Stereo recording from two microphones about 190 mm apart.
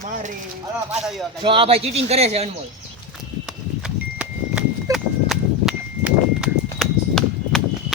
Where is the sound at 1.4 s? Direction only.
30° right (ahead or behind).